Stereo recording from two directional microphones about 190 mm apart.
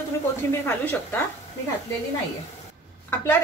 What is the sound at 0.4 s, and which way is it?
Speech, 10° left (ahead or behind).